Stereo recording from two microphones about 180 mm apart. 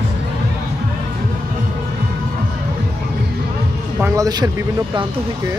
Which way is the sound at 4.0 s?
20° right (ahead or behind).